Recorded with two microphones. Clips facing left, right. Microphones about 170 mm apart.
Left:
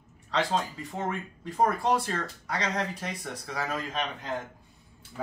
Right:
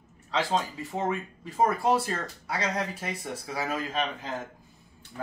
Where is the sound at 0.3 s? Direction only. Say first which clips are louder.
Even; centre (ahead or behind).